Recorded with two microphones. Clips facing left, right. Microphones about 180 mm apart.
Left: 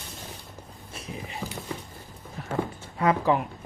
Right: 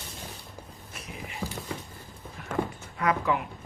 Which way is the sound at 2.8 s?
30° left (ahead or behind).